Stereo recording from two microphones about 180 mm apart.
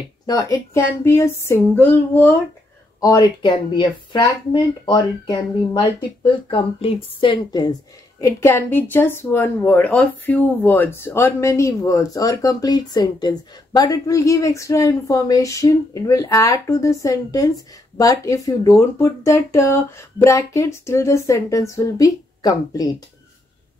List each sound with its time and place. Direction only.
0.3 s a woman's voice: 20° left (ahead or behind)
8.2 s a woman's voice: 15° left (ahead or behind)